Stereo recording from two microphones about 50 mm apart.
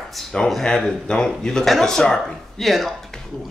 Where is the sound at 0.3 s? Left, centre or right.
Centre.